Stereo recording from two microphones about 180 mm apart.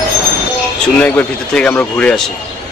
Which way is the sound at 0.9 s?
10° left (ahead or behind).